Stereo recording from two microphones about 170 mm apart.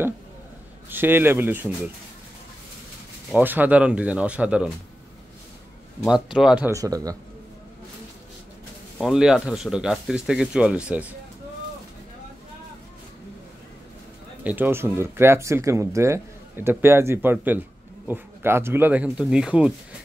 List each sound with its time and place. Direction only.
0.8 s speech: 10° right (ahead or behind)
3.3 s speech: 10° right (ahead or behind)
6.0 s speech: 5° right (ahead or behind)
6.7 s a man's voice: 20° right (ahead or behind)
8.9 s speech: centre (ahead or behind)
14.4 s speech: 10° right (ahead or behind)